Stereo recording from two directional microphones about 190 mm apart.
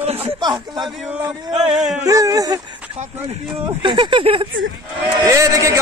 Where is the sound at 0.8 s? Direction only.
Centre (ahead or behind).